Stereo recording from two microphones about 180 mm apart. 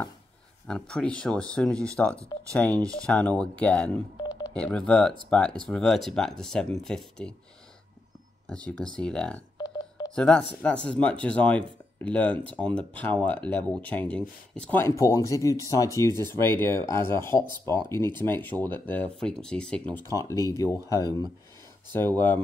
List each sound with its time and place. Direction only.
0.7 s speech: 5° left (ahead or behind)
8.5 s speech: 5° left (ahead or behind)
9.8 s telephone dialing: 25° left (ahead or behind)
10.1 s speech: 5° left (ahead or behind)
20.1 s speech: 15° left (ahead or behind)
21.9 s speech: 10° left (ahead or behind)